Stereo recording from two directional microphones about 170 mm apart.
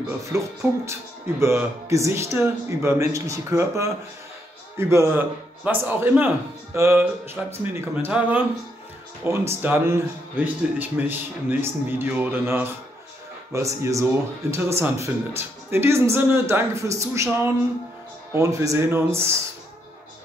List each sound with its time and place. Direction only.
0.3 s a man's voice: 15° right (ahead or behind)